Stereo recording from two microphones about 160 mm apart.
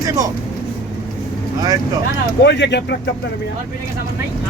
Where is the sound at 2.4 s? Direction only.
90° left.